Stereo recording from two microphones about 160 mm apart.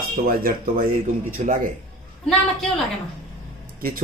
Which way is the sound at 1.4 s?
50° right (ahead or behind).